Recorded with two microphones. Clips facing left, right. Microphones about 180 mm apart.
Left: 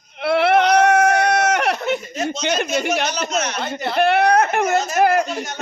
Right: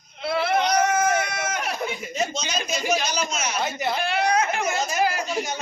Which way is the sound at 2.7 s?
70° left (ahead or behind).